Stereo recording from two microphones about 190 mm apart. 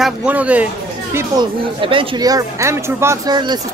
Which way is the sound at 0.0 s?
5° right (ahead or behind).